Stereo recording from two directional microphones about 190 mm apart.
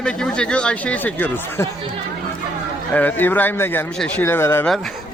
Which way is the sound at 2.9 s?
10° left (ahead or behind).